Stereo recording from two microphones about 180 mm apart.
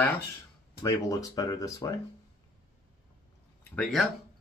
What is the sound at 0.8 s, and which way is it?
Speech, 20° left (ahead or behind).